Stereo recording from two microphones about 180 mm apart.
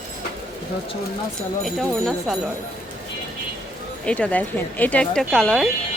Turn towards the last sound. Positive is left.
turn(degrees=0)  # may be behind; listen again after turning